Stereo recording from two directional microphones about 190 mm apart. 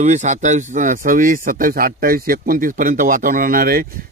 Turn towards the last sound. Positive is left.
turn(degrees=-50)  # may be behind; listen again after turning